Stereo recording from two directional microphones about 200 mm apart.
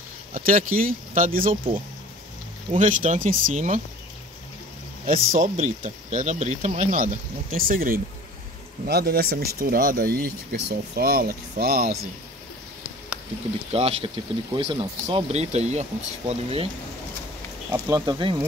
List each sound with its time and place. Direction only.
0.3 s speech: 45° right (ahead or behind)
2.8 s speech: 40° right (ahead or behind)
5.0 s speech: 40° right (ahead or behind)
13.7 s speech: 30° right (ahead or behind)
17.6 s speech: 15° right (ahead or behind)